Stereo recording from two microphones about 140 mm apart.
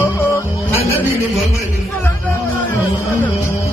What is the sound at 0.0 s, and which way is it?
Music, 20° left (ahead or behind).